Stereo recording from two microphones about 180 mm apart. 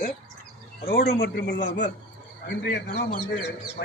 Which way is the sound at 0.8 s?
60° left (ahead or behind).